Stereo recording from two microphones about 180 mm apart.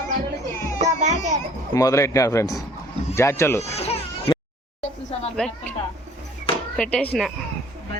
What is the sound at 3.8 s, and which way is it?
Baby cry, 35° left (ahead or behind).